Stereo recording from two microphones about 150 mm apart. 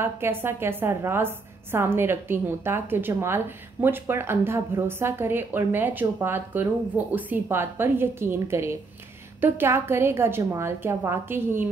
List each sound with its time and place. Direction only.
0.0 s a woman's voice: 15° right (ahead or behind)